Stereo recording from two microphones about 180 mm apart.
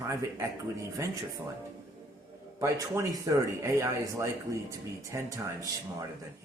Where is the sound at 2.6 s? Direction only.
15° right (ahead or behind).